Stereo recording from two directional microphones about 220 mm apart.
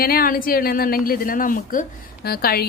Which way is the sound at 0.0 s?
45° left (ahead or behind).